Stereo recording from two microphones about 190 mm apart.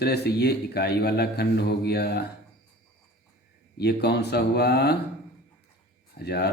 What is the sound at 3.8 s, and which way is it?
Speech, 60° left (ahead or behind).